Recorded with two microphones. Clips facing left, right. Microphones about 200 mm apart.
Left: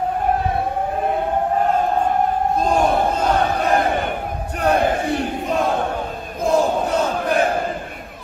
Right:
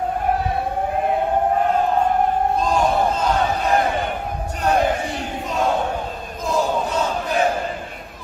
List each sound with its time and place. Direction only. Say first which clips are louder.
2.6 s battle cry: left 3 dB; 55° left (ahead or behind)